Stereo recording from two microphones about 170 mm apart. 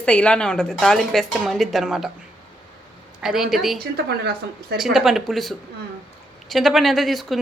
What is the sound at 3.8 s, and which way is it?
Speech, 70° right (ahead or behind).